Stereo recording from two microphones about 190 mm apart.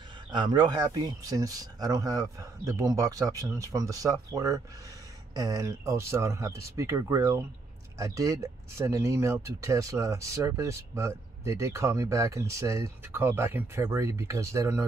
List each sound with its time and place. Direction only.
0.3 s speech: 25° right (ahead or behind)